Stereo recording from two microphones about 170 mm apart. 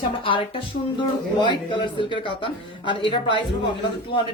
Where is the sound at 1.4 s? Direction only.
30° left (ahead or behind).